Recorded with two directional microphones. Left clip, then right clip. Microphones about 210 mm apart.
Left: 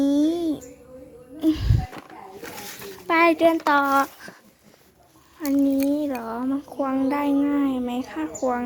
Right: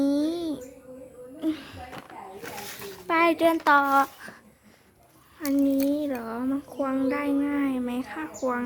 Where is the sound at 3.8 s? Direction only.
10° left (ahead or behind).